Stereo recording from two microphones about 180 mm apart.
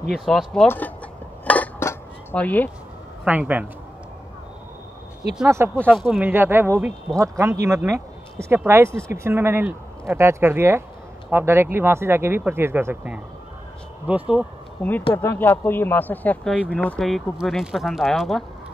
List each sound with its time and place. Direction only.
0.1 s speech: centre (ahead or behind)
1.4 s a sound: 10° left (ahead or behind)
3.3 s speech: 10° right (ahead or behind)
5.5 s speech: 10° right (ahead or behind)
14.8 s speech: 10° left (ahead or behind)